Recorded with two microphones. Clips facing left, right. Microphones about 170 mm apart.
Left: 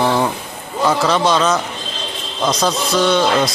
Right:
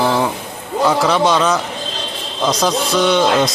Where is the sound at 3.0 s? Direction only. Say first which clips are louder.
Right 1 dB; 10° right (ahead or behind).